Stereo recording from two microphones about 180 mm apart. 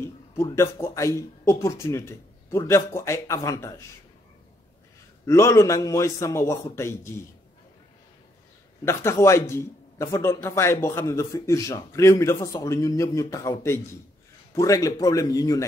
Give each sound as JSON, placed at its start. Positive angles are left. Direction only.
{"t": 0.0, "sound": "speech", "side_deg": 15}
{"t": 5.2, "sound": "speech", "side_deg": 15}
{"t": 8.8, "sound": "speech", "side_deg": 15}